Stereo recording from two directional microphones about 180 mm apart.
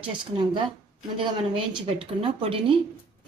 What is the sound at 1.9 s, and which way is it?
Speech, 30° right (ahead or behind).